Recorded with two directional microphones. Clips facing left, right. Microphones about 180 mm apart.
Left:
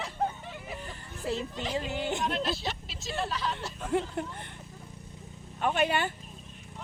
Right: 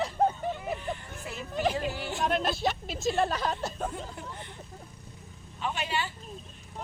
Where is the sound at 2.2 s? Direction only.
50° right (ahead or behind).